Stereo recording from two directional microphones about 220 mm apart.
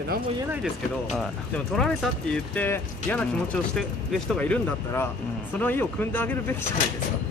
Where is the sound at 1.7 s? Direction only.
5° left (ahead or behind).